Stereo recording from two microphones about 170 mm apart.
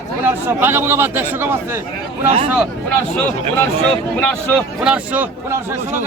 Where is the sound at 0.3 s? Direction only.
15° right (ahead or behind).